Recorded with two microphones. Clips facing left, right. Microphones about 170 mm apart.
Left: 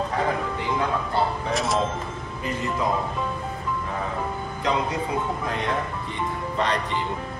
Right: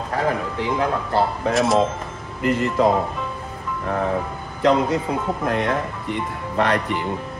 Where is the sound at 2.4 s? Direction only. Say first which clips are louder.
Right 8 dB; 70° right (ahead or behind).